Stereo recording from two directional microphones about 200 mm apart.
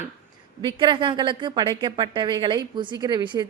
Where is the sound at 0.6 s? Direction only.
25° right (ahead or behind).